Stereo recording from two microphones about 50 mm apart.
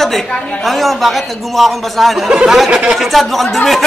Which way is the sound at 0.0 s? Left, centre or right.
Centre.